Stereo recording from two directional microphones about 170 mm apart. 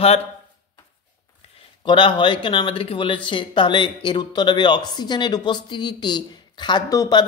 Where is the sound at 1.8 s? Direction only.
30° left (ahead or behind).